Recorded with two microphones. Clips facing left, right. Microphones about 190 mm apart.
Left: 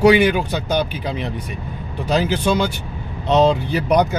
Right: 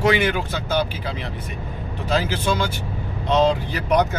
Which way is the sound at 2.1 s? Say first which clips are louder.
Left 4 dB; 20° left (ahead or behind).